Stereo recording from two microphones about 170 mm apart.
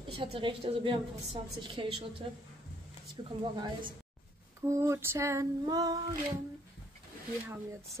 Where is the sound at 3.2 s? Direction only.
30° right (ahead or behind).